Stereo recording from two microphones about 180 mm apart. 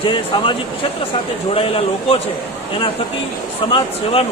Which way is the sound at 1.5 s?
30° left (ahead or behind).